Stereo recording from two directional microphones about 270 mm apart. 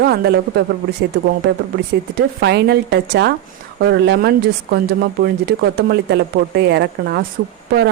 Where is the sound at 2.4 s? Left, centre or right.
Right.